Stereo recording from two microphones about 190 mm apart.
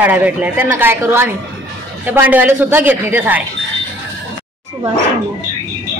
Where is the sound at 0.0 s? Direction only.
10° right (ahead or behind).